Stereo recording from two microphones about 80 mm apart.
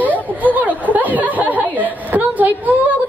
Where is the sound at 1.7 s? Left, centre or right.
Right.